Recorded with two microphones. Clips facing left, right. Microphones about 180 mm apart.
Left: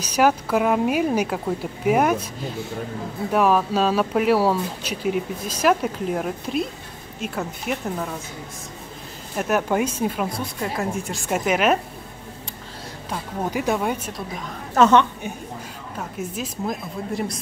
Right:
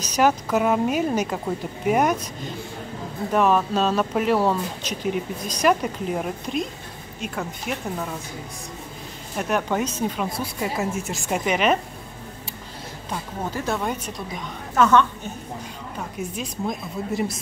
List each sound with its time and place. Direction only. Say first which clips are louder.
0.0 s a woman's voice: left 1 dB; 10° left (ahead or behind)
3.3 s speech: left 1 dB; 5° left (ahead or behind)
9.4 s a woman's voice: left 2 dB; 5° left (ahead or behind)
10.4 s speech: even; 5° right (ahead or behind)
13.4 s a woman's voice: left 4 dB; 15° left (ahead or behind)
14.8 s a woman's voice: left 2 dB; 20° left (ahead or behind)
16.0 s speech: left 1 dB; centre (ahead or behind)